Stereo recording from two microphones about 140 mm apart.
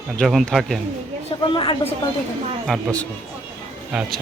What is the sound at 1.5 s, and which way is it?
Speech, 35° left (ahead or behind).